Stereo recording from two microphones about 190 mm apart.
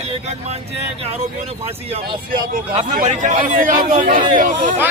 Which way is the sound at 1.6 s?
30° right (ahead or behind).